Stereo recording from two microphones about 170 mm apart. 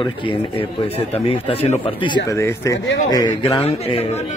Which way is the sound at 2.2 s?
15° left (ahead or behind).